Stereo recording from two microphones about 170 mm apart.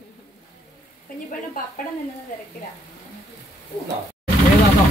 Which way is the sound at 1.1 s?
55° left (ahead or behind).